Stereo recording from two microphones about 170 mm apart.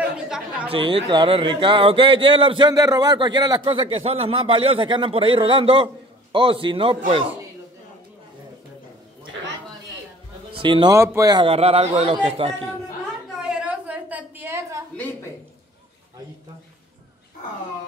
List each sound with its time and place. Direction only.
0.7 s a man's voice: 30° right (ahead or behind)
10.6 s speech: 30° right (ahead or behind)
11.0 s speech: 15° right (ahead or behind)
11.4 s a man's voice: 35° right (ahead or behind)
13.4 s a sound: 5° right (ahead or behind)